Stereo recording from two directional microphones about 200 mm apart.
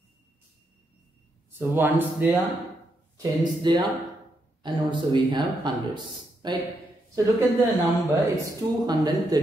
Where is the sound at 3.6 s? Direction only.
20° right (ahead or behind).